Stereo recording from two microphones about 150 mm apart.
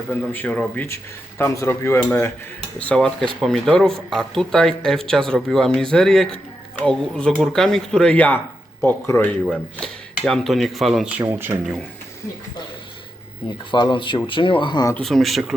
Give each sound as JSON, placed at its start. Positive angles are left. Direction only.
{"t": 0.3, "sound": "cutlery", "side_deg": 10}
{"t": 3.4, "sound": "speech", "side_deg": 5}
{"t": 8.8, "sound": "cutlery", "side_deg": 10}
{"t": 9.5, "sound": "speech", "side_deg": 0}
{"t": 11.2, "sound": "speech", "side_deg": -15}
{"t": 13.7, "sound": "speech", "side_deg": 30}
{"t": 14.9, "sound": "speech", "side_deg": 0}